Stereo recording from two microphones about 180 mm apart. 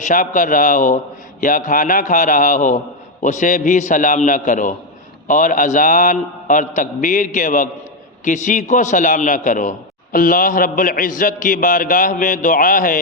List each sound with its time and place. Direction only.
0.0 s a man's voice: 45° left (ahead or behind)